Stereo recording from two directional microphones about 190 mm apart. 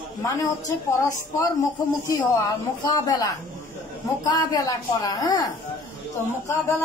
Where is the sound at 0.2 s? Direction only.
15° left (ahead or behind).